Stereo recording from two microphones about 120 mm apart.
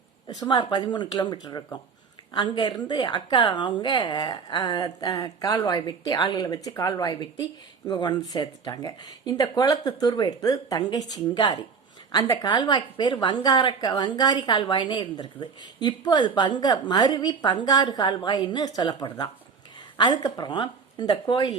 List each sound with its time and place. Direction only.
0.3 s a woman's voice: 35° left (ahead or behind)